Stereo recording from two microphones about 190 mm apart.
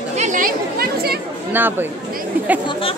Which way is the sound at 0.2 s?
45° right (ahead or behind).